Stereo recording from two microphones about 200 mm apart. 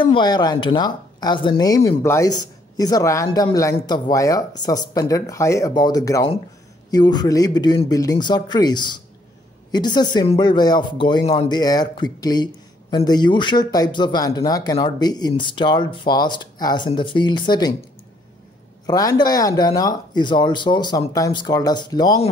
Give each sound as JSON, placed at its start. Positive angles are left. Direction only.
{"t": 0.0, "sound": "speech", "side_deg": 25}
{"t": 3.3, "sound": "speech", "side_deg": 30}
{"t": 18.9, "sound": "speech", "side_deg": 20}